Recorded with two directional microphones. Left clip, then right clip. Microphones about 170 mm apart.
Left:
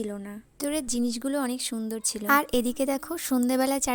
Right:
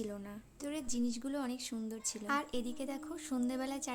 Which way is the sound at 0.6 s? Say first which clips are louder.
Left 10 dB; 45° left (ahead or behind).